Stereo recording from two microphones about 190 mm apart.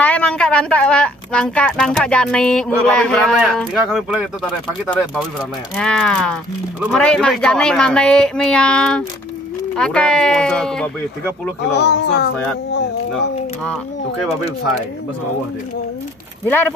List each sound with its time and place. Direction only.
0.0 s a woman's voice: 5° left (ahead or behind)
11.7 s speech: 65° left (ahead or behind)